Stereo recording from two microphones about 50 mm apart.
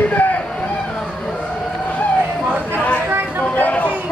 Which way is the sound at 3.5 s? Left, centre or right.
Left.